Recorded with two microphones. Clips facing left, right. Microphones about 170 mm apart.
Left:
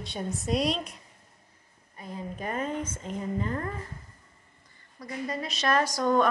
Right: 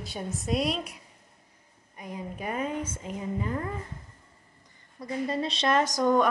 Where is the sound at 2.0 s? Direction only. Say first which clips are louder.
Even; 15° right (ahead or behind).